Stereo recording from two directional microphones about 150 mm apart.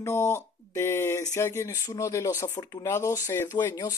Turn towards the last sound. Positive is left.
turn(degrees=20)  # may be behind; listen again after turning